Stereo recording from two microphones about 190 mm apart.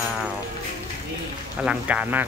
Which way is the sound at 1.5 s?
5° right (ahead or behind).